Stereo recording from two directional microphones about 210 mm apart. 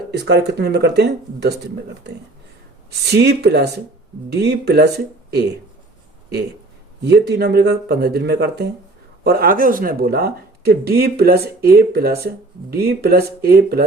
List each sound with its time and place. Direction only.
0.2 s speech: 50° right (ahead or behind)
3.0 s speech: 50° right (ahead or behind)
7.0 s speech: 50° right (ahead or behind)